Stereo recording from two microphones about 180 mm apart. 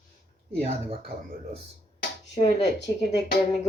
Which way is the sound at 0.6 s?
35° right (ahead or behind).